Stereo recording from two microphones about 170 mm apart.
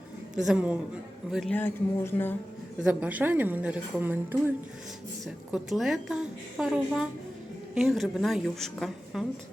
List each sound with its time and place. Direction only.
0.3 s a woman's voice: 5° right (ahead or behind)
1.5 s speech: 10° left (ahead or behind)
2.8 s a woman's voice: 10° right (ahead or behind)